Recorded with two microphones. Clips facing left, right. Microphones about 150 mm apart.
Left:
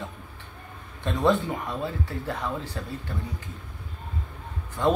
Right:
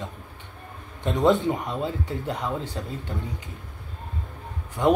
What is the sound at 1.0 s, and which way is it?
Speech, 20° right (ahead or behind).